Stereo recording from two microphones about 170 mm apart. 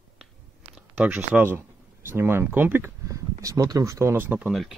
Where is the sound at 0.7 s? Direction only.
10° right (ahead or behind).